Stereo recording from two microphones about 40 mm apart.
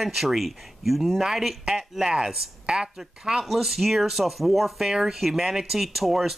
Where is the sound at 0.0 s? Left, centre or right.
Centre.